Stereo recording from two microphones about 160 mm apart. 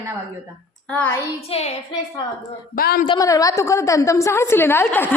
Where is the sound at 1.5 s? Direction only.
40° left (ahead or behind).